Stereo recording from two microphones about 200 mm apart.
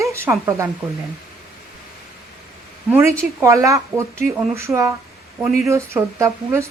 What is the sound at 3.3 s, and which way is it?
Speech, 15° right (ahead or behind).